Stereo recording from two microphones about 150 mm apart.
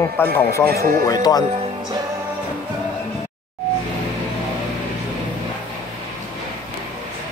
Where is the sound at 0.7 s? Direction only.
90° right.